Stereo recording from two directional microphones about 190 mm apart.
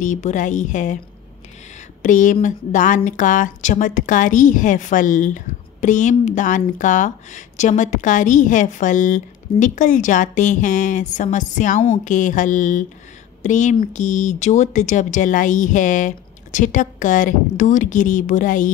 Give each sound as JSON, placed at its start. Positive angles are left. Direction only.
{"t": 0.0, "sound": "a woman's voice", "side_deg": 40}
{"t": 2.0, "sound": "mantra", "side_deg": 40}
{"t": 2.4, "sound": "a woman's voice", "side_deg": 40}
{"t": 12.0, "sound": "mantra", "side_deg": 40}
{"t": 13.4, "sound": "a woman's voice", "side_deg": 40}